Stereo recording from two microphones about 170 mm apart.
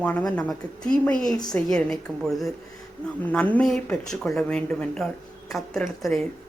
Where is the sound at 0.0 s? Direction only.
5° left (ahead or behind).